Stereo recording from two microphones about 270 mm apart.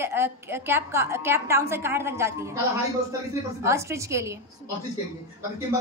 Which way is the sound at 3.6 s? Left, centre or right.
Centre.